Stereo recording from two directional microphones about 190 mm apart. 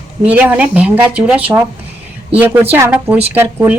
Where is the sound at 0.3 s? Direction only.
5° right (ahead or behind).